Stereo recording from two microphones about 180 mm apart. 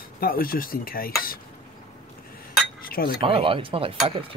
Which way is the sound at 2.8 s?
55° left (ahead or behind).